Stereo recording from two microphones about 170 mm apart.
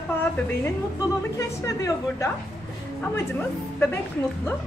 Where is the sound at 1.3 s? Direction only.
20° left (ahead or behind).